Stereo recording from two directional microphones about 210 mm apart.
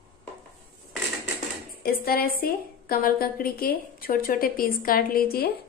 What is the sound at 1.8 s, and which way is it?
A woman's voice, 45° left (ahead or behind).